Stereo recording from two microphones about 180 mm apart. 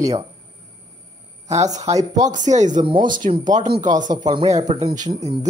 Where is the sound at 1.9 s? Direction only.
20° right (ahead or behind).